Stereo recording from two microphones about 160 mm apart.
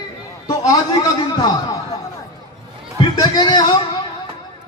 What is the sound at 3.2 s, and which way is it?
Speech, 25° left (ahead or behind).